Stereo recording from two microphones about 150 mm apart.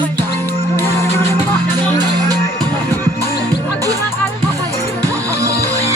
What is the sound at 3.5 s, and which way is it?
Music, 25° right (ahead or behind).